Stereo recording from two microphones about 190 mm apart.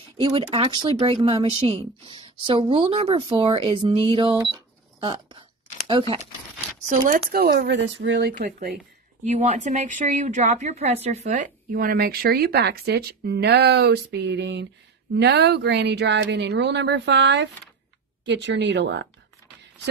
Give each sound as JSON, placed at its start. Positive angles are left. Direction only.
{"t": 0.2, "sound": "speech", "side_deg": -25}
{"t": 6.9, "sound": "speech", "side_deg": -45}
{"t": 9.2, "sound": "a woman's voice", "side_deg": -40}